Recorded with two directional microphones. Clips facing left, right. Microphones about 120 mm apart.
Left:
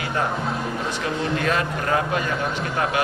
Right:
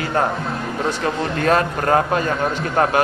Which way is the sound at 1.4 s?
45° right (ahead or behind).